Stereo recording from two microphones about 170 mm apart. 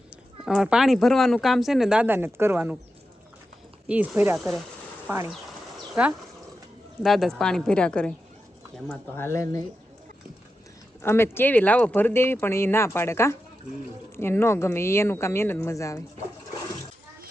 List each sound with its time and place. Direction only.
0.1 s speech: 5° right (ahead or behind)
3.8 s speech: 10° right (ahead or behind); by 9.6 s 20° left (ahead or behind)
11.0 s speech: 15° left (ahead or behind)